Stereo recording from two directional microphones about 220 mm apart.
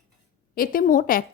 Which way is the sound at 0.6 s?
40° left (ahead or behind).